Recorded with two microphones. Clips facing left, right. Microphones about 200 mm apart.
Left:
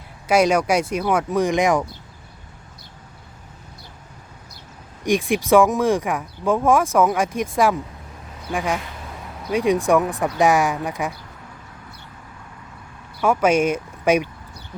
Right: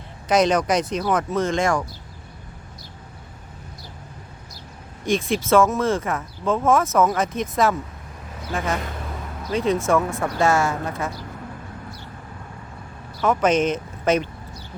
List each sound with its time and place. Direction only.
0.3 s speech: 10° left (ahead or behind)
5.0 s speech: 15° left (ahead or behind)
13.2 s speech: 10° left (ahead or behind)